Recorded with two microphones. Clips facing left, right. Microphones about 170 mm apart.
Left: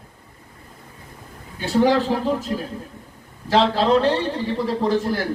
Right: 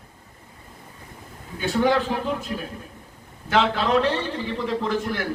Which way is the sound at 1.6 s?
35° left (ahead or behind).